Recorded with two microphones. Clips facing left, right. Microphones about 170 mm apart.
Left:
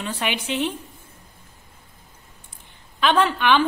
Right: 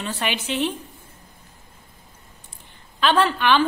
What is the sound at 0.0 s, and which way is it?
Speech, 10° left (ahead or behind).